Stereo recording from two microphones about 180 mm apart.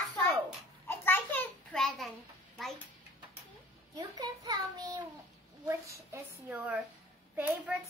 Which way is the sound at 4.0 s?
20° right (ahead or behind).